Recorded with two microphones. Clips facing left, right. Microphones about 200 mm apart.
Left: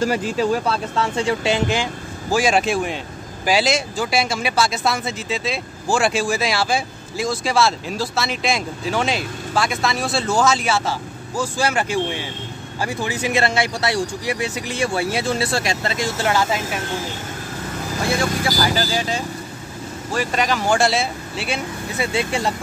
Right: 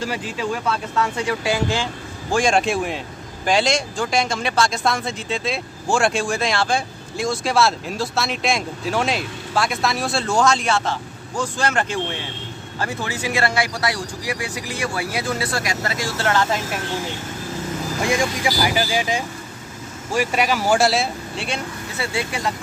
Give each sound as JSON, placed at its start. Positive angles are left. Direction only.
{"t": 0.0, "sound": "speech", "side_deg": 45}
{"t": 2.3, "sound": "speech", "side_deg": 5}
{"t": 18.0, "sound": "speech", "side_deg": -15}
{"t": 21.9, "sound": "speech", "side_deg": 20}